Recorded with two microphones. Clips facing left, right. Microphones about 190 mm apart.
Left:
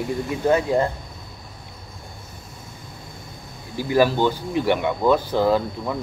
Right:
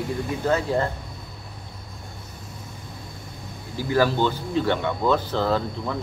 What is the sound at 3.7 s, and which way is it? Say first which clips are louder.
Speech: left 3 dB; 15° left (ahead or behind).